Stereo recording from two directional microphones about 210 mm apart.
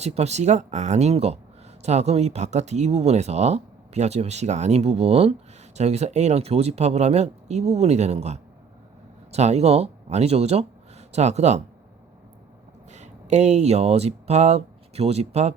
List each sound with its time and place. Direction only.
0.0 s speech: 30° right (ahead or behind)
12.9 s speech: 35° right (ahead or behind)